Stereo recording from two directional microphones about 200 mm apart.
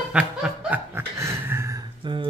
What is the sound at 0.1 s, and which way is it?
Snicker, 5° right (ahead or behind).